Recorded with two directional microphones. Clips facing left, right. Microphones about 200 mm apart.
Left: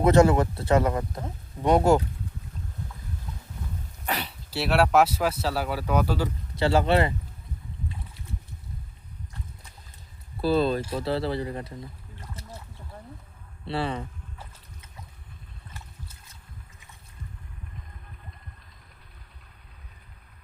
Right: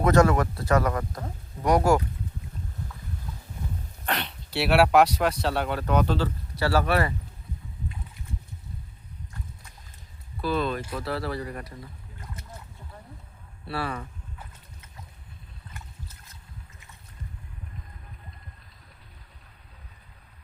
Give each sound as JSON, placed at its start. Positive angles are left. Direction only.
{"t": 0.0, "sound": "speech", "side_deg": 30}
{"t": 4.0, "sound": "speech", "side_deg": 10}
{"t": 10.4, "sound": "speech", "side_deg": 30}
{"t": 13.7, "sound": "speech", "side_deg": 25}